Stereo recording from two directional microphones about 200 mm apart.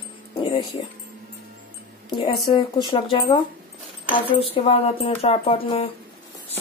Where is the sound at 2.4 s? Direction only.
20° left (ahead or behind).